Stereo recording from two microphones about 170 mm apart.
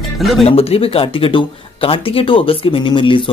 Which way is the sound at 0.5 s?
35° left (ahead or behind).